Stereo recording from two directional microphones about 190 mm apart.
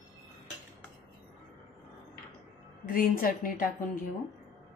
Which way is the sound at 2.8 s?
50° left (ahead or behind).